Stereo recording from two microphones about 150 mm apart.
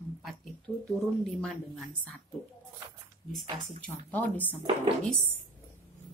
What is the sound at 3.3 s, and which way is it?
Speech, centre (ahead or behind).